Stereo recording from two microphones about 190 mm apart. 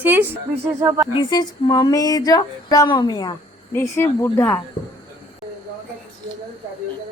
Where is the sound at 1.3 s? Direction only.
20° left (ahead or behind).